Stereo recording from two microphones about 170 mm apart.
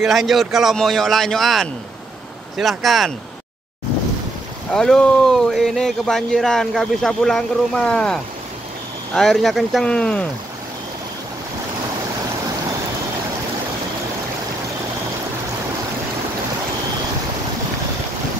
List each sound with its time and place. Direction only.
0.0 s speech: centre (ahead or behind)
4.7 s speech: 5° left (ahead or behind)